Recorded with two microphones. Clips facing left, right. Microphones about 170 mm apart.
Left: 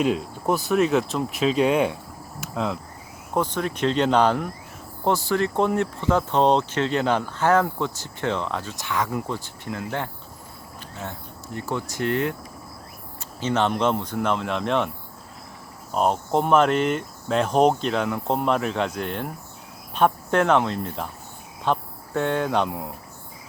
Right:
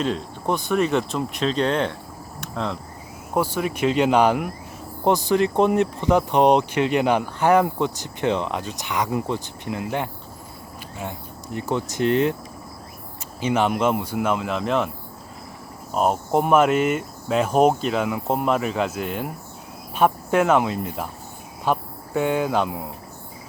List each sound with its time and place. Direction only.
0.0 s speech: 5° left (ahead or behind)
2.4 s cricket: 5° left (ahead or behind)
3.3 s speech: 10° right (ahead or behind)
11.5 s speech: 20° right (ahead or behind)
13.4 s speech: 10° right (ahead or behind)
15.9 s speech: 5° right (ahead or behind)